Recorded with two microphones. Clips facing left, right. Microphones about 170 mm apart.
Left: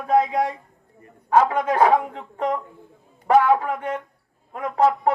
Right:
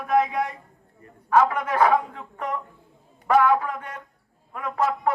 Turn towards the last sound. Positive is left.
turn(degrees=30)  # may be behind; listen again after turning